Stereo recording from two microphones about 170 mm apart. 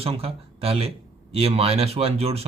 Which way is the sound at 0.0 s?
35° right (ahead or behind).